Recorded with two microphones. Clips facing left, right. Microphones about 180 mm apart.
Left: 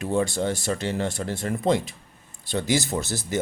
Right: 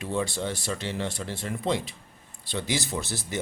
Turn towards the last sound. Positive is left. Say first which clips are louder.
# left 4 dB
turn(degrees=45)  # may be behind; listen again after turning